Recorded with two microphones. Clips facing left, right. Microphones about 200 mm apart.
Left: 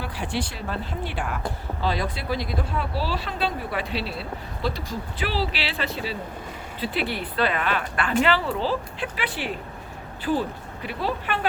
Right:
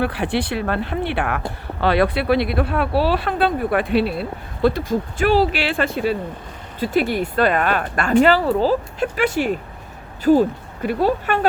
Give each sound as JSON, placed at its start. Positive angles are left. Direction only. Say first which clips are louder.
{"t": 0.0, "sound": "speech", "louder": "right 8 dB", "side_deg": -65}